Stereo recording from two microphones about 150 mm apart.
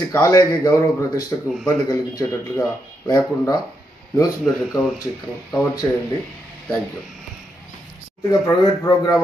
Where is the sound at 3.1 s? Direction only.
25° left (ahead or behind).